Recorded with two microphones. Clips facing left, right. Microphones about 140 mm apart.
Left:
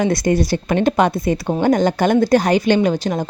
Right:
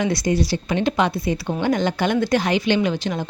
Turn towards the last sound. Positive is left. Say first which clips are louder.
# left 4 dB
turn(degrees=40)  # may be behind; listen again after turning